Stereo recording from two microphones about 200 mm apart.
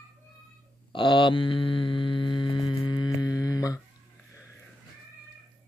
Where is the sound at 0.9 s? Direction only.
25° left (ahead or behind).